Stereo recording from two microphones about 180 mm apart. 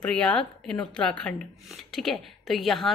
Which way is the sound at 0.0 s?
5° left (ahead or behind).